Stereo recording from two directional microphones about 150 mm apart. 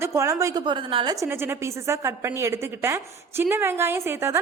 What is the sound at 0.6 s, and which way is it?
Speech, 35° right (ahead or behind).